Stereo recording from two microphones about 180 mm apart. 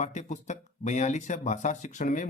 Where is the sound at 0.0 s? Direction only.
40° left (ahead or behind).